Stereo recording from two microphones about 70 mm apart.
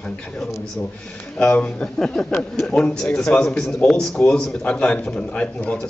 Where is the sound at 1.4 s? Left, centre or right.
Centre.